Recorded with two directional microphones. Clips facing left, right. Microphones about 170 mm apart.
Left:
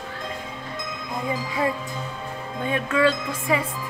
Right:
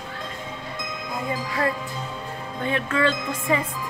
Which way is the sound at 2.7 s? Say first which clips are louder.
Left 2 dB; 10° left (ahead or behind).